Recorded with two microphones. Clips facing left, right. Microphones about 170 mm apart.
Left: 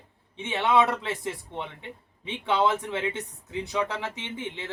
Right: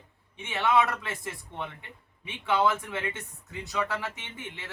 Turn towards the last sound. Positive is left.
turn(degrees=25)  # may be behind; listen again after turning